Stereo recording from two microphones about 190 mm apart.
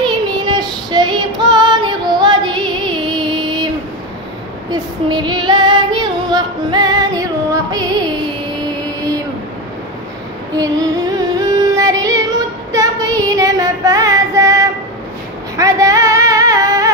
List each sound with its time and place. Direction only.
0.0 s child singing: 25° right (ahead or behind)
4.6 s female singing: 25° right (ahead or behind)
7.7 s music: 20° right (ahead or behind)
10.5 s music: 20° right (ahead or behind)
12.7 s child singing: 20° right (ahead or behind)
15.5 s a sound: 15° right (ahead or behind)